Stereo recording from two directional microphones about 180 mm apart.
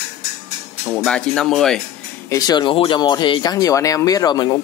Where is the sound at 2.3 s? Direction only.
20° left (ahead or behind).